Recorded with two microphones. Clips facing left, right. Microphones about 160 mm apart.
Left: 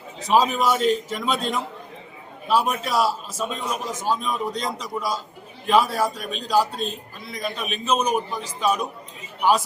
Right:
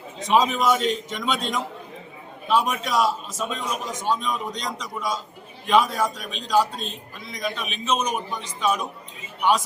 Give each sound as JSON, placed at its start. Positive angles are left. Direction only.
{"t": 0.3, "sound": "a man's voice", "side_deg": 5}
{"t": 6.0, "sound": "a man's voice", "side_deg": 40}
{"t": 6.5, "sound": "a man's voice", "side_deg": 5}